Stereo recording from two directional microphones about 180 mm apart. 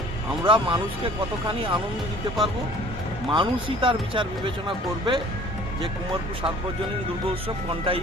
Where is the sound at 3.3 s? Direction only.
25° right (ahead or behind).